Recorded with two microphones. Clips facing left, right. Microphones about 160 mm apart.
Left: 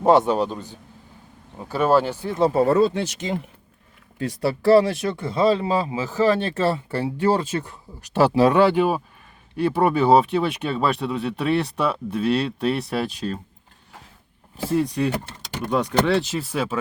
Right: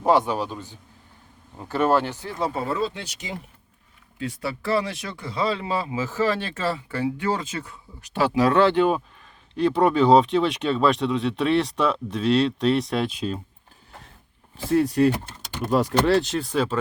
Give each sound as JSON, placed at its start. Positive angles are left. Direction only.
{"t": 0.0, "sound": "a man's voice", "side_deg": 20}
{"t": 2.6, "sound": "speech", "side_deg": 45}
{"t": 3.0, "sound": "speech", "side_deg": 55}
{"t": 4.2, "sound": "speech", "side_deg": 35}
{"t": 4.9, "sound": "speech", "side_deg": 50}
{"t": 5.4, "sound": "speech", "side_deg": 35}
{"t": 6.1, "sound": "speech", "side_deg": 15}
{"t": 6.6, "sound": "speech", "side_deg": 30}
{"t": 8.5, "sound": "speech", "side_deg": 10}
{"t": 14.7, "sound": "speech", "side_deg": 0}